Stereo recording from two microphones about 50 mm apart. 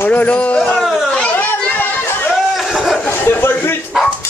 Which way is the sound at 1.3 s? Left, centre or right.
Left.